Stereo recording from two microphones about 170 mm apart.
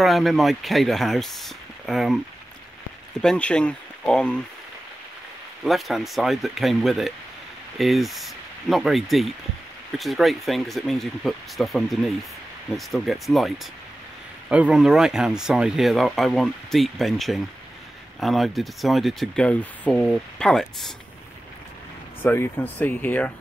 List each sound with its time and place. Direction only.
0.0 s speech: centre (ahead or behind)
3.2 s speech: 5° left (ahead or behind)
5.6 s speech: centre (ahead or behind)
14.5 s speech: 5° right (ahead or behind)
22.2 s speech: 10° left (ahead or behind)